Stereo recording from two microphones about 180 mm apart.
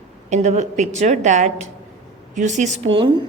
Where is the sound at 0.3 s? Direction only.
40° right (ahead or behind).